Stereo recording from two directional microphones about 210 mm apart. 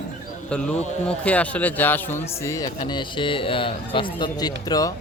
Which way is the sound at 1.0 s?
5° left (ahead or behind).